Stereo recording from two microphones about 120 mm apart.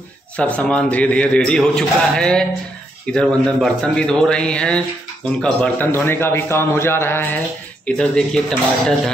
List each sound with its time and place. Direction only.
0.4 s a man's voice: 10° left (ahead or behind)